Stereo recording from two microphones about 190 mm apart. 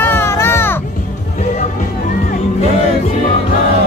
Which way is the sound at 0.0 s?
15° left (ahead or behind).